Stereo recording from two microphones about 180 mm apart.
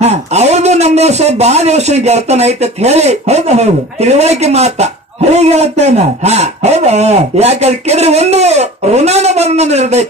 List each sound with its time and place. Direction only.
0.0 s speech: 35° right (ahead or behind)